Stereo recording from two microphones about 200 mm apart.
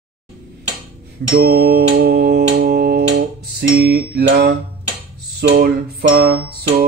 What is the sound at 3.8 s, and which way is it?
Music, 50° right (ahead or behind).